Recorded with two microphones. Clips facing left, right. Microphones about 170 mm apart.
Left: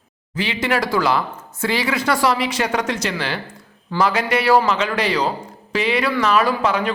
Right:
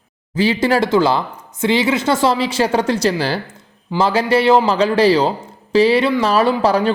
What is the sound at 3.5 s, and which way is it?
A man's voice, 25° right (ahead or behind).